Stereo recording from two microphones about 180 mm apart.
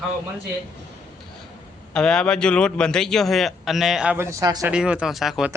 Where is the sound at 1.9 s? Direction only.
5° left (ahead or behind).